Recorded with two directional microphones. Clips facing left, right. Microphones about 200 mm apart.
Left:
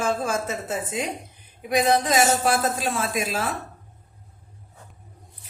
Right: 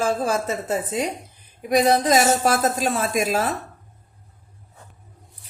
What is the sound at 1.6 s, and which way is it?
A woman's voice, 40° right (ahead or behind).